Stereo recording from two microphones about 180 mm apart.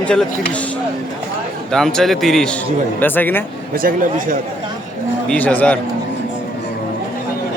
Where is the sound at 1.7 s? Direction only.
5° left (ahead or behind).